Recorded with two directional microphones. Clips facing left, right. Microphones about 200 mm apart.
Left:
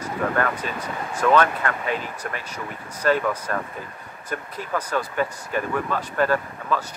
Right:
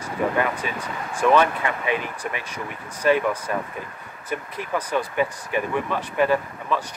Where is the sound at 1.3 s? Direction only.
10° right (ahead or behind).